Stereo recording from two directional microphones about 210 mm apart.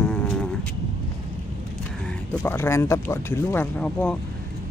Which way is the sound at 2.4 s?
10° left (ahead or behind).